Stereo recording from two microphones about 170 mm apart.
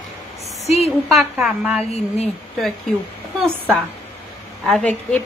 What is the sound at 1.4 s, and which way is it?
Speech, 10° right (ahead or behind).